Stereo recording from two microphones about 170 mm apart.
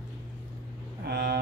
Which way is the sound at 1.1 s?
75° right (ahead or behind).